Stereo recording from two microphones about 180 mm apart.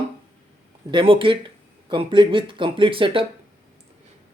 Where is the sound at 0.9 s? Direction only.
30° right (ahead or behind).